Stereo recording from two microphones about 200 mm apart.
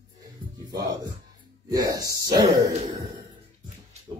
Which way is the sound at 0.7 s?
20° right (ahead or behind).